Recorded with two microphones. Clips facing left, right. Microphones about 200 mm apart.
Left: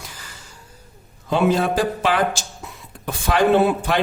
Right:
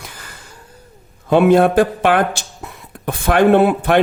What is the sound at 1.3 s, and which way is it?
A man's voice, 55° right (ahead or behind).